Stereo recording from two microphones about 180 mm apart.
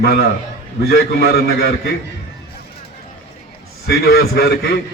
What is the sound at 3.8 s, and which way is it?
Speech, 60° left (ahead or behind).